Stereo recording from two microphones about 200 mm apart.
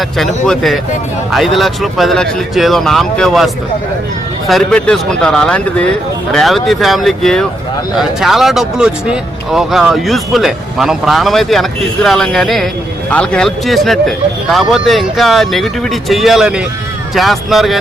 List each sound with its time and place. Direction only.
0.4 s speech: centre (ahead or behind)